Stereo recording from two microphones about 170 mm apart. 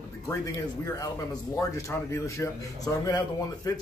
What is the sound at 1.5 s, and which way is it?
A man's voice, 20° left (ahead or behind).